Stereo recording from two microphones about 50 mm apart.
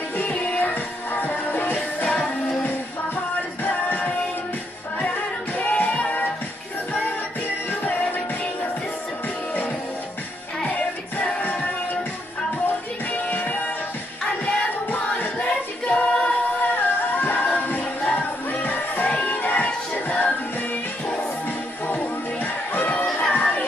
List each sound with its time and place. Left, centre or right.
0.2 s music: left
2.1 s music: centre
3.6 s music: left
5.6 s music: left
10.7 s music: left
12.6 s music: left
16.7 s music: left
21.8 s music: left